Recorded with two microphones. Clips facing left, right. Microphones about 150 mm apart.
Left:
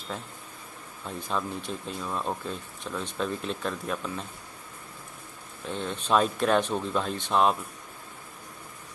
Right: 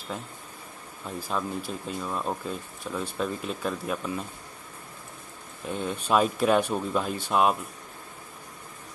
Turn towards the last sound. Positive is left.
turn(degrees=-5)  # may be behind; listen again after turning